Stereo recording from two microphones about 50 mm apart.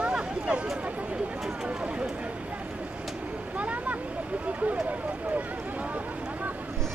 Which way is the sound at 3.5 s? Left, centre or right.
Right.